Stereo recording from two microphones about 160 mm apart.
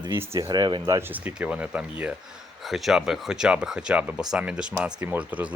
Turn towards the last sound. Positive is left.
turn(degrees=-10)  # may be behind; listen again after turning